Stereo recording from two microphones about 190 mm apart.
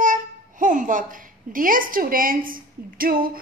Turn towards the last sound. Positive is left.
turn(degrees=-50)  # may be behind; listen again after turning